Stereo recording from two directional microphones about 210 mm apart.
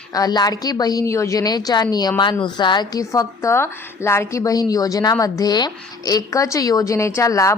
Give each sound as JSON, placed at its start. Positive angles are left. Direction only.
{"t": 0.1, "sound": "a woman's voice", "side_deg": 20}